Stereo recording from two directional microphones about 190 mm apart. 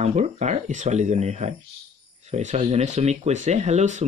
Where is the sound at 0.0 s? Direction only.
35° right (ahead or behind).